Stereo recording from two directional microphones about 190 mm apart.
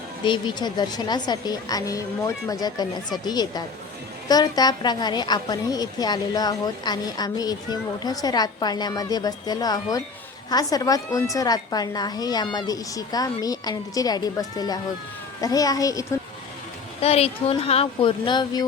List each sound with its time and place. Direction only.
0.3 s a woman's voice: 25° left (ahead or behind)
17.0 s speech: 30° left (ahead or behind)